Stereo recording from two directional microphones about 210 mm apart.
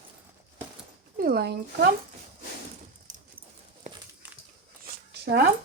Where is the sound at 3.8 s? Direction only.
35° right (ahead or behind).